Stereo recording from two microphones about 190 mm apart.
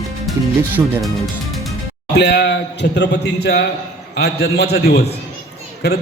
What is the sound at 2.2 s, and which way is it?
A man's voice, 60° left (ahead or behind).